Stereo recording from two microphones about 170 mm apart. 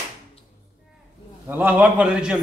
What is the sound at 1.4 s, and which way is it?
Speech, 10° right (ahead or behind).